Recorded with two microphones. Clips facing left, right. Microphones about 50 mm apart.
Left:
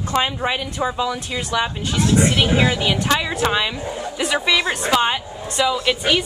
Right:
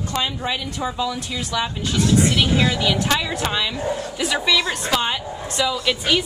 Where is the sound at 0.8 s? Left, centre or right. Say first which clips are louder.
Left 3 dB; centre.